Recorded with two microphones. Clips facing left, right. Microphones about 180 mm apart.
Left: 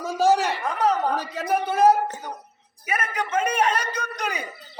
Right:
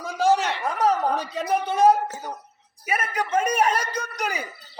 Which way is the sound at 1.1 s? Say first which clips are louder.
Even; 5° left (ahead or behind).